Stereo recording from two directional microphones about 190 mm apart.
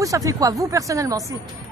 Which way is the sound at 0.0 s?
15° right (ahead or behind).